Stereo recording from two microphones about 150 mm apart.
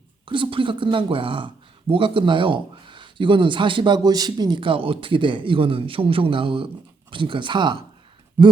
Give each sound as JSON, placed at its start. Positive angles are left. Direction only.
{"t": 0.3, "sound": "speech", "side_deg": -35}